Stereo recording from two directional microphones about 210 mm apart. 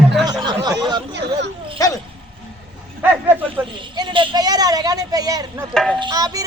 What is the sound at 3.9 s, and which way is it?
A man's voice, 20° right (ahead or behind).